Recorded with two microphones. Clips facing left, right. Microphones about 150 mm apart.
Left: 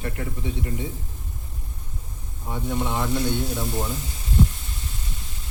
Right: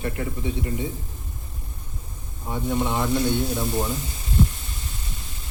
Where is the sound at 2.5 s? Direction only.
10° right (ahead or behind).